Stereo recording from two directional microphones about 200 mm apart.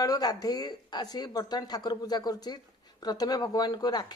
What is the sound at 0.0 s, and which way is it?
A woman's voice, 20° left (ahead or behind).